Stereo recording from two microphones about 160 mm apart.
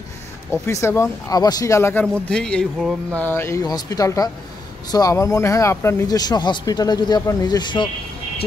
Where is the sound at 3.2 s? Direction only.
15° left (ahead or behind).